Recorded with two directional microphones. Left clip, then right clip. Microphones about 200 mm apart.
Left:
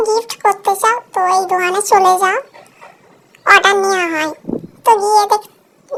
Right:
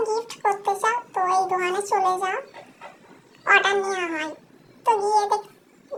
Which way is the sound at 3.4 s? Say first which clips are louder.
Left 9 dB; 50° left (ahead or behind).